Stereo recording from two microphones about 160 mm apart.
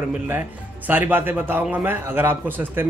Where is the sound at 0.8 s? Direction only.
10° right (ahead or behind).